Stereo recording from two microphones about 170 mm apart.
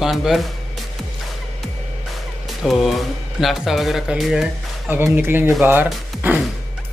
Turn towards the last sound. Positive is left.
turn(degrees=-10)  # may be behind; listen again after turning